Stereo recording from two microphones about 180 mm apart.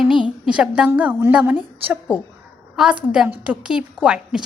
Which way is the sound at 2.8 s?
5° right (ahead or behind).